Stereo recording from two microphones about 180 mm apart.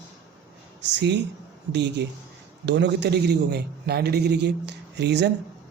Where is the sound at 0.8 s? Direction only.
75° right (ahead or behind).